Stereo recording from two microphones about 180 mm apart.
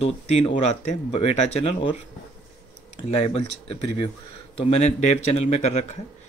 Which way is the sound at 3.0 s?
30° left (ahead or behind).